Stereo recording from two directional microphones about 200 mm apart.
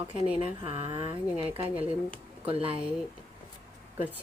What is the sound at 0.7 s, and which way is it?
Speech, 30° right (ahead or behind).